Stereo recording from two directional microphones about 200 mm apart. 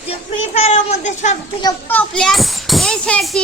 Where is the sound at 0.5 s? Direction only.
35° left (ahead or behind).